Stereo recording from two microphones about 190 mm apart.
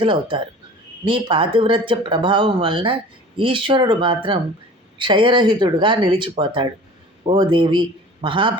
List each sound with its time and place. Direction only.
0.0 s speech: 25° right (ahead or behind)